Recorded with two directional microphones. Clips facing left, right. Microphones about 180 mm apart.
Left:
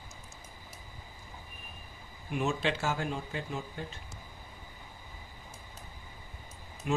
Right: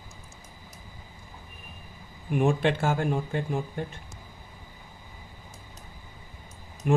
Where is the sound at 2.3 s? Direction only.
55° right (ahead or behind).